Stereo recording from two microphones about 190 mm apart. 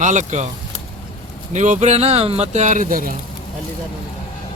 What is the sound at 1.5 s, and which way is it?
A man's voice, 40° right (ahead or behind).